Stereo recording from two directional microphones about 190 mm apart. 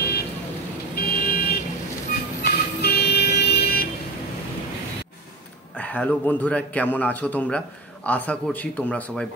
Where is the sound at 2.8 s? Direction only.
60° left (ahead or behind).